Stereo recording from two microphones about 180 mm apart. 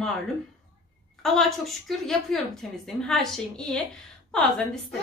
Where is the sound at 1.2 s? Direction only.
Centre (ahead or behind).